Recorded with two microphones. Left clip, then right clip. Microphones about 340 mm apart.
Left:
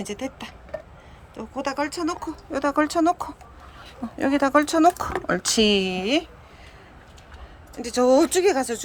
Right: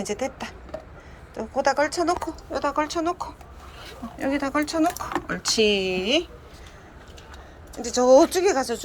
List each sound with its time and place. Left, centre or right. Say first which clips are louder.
0.0 s speech: right 3 dB; centre
4.2 s speech: left 5 dB; centre
7.8 s speech: right 2 dB; centre